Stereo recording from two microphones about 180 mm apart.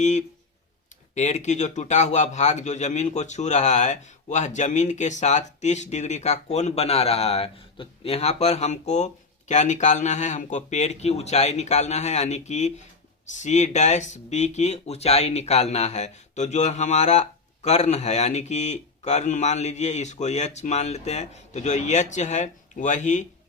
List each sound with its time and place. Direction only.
0.0 s a man's voice: 40° left (ahead or behind)